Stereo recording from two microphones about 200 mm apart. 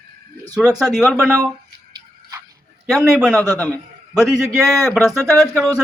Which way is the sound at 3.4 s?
10° left (ahead or behind).